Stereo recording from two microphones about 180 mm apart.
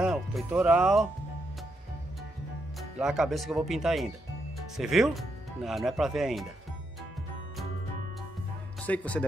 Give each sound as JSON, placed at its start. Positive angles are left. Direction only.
{"t": 0.0, "sound": "speech", "side_deg": 0}
{"t": 3.0, "sound": "speech", "side_deg": 0}
{"t": 8.8, "sound": "speech", "side_deg": 10}